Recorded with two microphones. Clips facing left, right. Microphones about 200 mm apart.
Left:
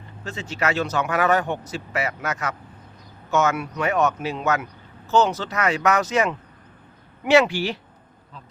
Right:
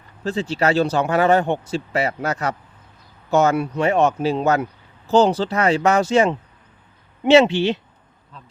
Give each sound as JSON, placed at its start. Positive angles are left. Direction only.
{"t": 0.3, "sound": "speech", "side_deg": -30}